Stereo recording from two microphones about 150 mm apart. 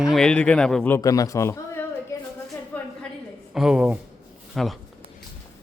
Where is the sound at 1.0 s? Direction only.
20° left (ahead or behind).